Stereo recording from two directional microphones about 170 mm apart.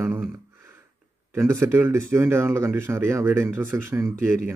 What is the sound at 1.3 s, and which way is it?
Speech, 15° right (ahead or behind).